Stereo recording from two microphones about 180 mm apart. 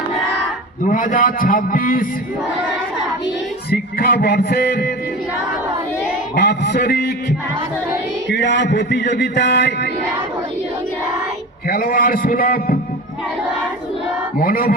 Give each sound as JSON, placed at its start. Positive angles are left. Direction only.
{"t": 0.9, "sound": "a man's voice", "side_deg": 45}
{"t": 3.7, "sound": "music", "side_deg": 60}
{"t": 6.3, "sound": "music", "side_deg": 65}
{"t": 8.3, "sound": "a man's voice", "side_deg": 75}
{"t": 11.7, "sound": "a man's voice", "side_deg": 55}
{"t": 14.3, "sound": "a man's voice", "side_deg": 55}